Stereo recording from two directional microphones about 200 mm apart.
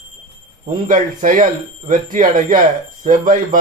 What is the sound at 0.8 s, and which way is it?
A man's voice, 40° right (ahead or behind).